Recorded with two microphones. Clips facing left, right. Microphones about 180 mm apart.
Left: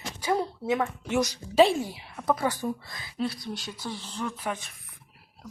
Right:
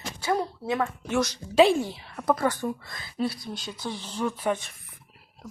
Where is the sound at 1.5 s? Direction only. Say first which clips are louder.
Right 1 dB; centre (ahead or behind).